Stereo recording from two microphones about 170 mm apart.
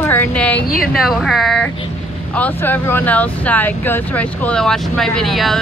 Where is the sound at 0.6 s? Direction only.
60° left (ahead or behind).